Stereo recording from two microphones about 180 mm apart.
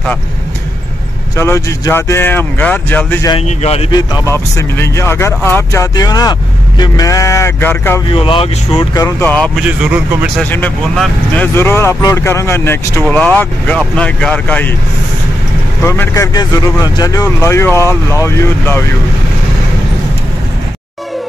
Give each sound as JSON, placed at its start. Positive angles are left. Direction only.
{"t": 1.3, "sound": "speech", "side_deg": 15}
{"t": 3.4, "sound": "speech", "side_deg": 35}
{"t": 3.9, "sound": "speech", "side_deg": 20}
{"t": 8.1, "sound": "speech", "side_deg": 30}
{"t": 9.2, "sound": "speech", "side_deg": 5}
{"t": 9.6, "sound": "speech", "side_deg": -5}
{"t": 10.4, "sound": "speech", "side_deg": 10}
{"t": 15.8, "sound": "speech", "side_deg": 15}